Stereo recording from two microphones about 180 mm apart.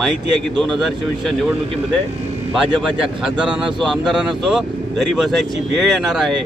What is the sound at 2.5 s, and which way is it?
Speech, centre (ahead or behind).